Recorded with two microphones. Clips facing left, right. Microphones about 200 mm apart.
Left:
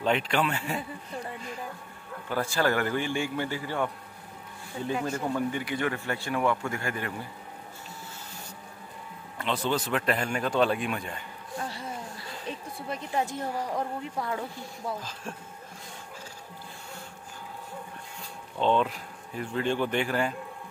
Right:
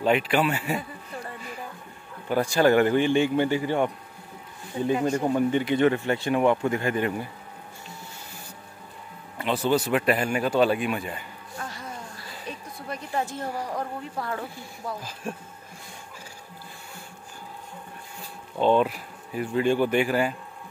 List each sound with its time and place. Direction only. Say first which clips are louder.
0.0 s speech: right 4 dB; 5° right (ahead or behind)
2.2 s speech: right 6 dB; 15° right (ahead or behind)
9.4 s speech: right 5 dB; 10° right (ahead or behind)
11.5 s music: left 2 dB; 30° left (ahead or behind)
12.4 s a woman's voice: even; 20° left (ahead or behind)
15.0 s speech: right 4 dB; 10° right (ahead or behind)
18.6 s speech: right 4 dB; 10° right (ahead or behind)